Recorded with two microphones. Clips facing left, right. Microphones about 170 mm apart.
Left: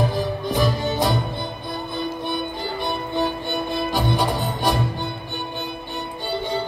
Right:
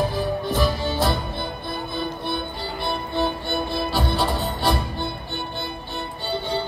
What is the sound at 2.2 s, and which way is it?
Music, 15° left (ahead or behind).